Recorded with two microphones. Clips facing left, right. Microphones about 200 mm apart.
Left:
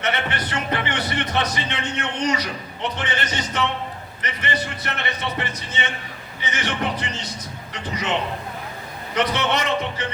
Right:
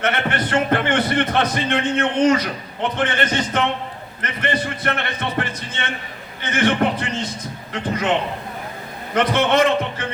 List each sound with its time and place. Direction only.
0.0 s a man's voice: 50° right (ahead or behind)
9.1 s a man's voice: 50° right (ahead or behind)